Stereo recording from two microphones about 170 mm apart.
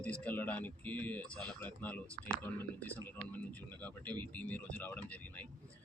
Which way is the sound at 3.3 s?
10° left (ahead or behind).